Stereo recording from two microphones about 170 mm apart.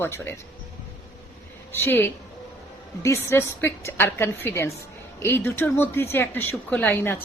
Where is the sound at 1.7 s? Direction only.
10° left (ahead or behind).